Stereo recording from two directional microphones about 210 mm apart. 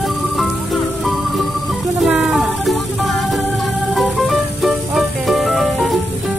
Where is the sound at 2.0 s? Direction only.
5° right (ahead or behind).